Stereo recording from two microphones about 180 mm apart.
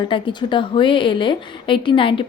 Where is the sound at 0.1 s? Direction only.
25° left (ahead or behind).